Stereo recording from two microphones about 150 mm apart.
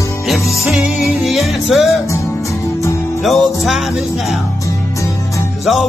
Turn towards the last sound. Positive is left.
turn(degrees=0)  # may be behind; listen again after turning